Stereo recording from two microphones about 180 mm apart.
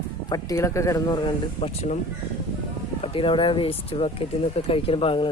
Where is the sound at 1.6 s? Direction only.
35° left (ahead or behind).